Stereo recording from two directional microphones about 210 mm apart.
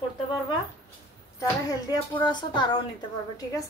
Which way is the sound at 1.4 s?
15° left (ahead or behind).